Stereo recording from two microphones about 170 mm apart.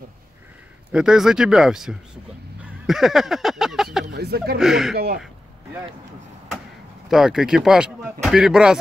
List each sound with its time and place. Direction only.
0.9 s speech: 5° right (ahead or behind)
2.6 s a sound: centre (ahead or behind)
4.1 s speech: 70° right (ahead or behind)
4.6 s speech: centre (ahead or behind)
4.9 s speech: 65° right (ahead or behind)
7.1 s speech: 5° right (ahead or behind)